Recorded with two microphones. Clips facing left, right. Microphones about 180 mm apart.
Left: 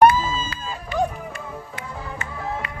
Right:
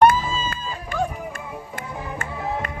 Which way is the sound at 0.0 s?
50° right (ahead or behind).